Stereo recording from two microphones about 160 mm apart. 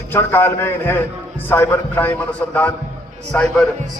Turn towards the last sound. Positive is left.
turn(degrees=5)  # may be behind; listen again after turning